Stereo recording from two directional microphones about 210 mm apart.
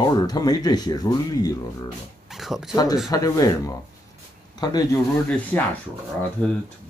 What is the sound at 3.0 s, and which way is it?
Speech, 15° left (ahead or behind).